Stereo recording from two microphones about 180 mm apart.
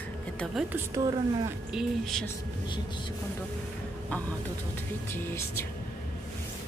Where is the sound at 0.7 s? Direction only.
15° right (ahead or behind).